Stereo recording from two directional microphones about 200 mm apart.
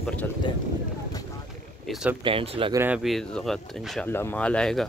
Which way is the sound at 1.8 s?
5° right (ahead or behind).